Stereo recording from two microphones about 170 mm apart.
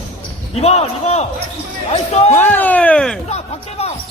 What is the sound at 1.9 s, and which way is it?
Speech, 35° left (ahead or behind).